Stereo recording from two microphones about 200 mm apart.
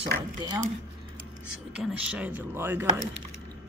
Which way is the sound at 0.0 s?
20° right (ahead or behind).